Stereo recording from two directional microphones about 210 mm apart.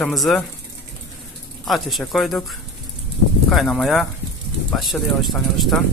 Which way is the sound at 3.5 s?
Centre (ahead or behind).